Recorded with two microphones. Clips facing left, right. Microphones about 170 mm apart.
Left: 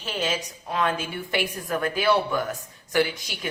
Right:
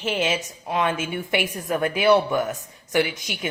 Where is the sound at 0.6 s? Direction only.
20° right (ahead or behind).